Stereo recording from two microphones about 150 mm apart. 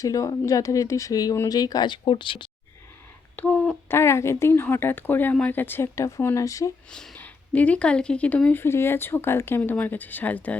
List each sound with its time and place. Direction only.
0.0 s speech: 20° left (ahead or behind)
3.3 s speech: 10° left (ahead or behind)
6.9 s speech: 5° left (ahead or behind)